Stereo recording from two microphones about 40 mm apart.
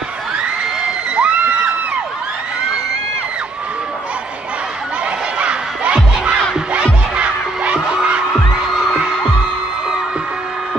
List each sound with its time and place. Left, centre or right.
1.1 s crowd: right
5.4 s crowd: right
6.7 s music: right
8.3 s music: centre
8.9 s music: right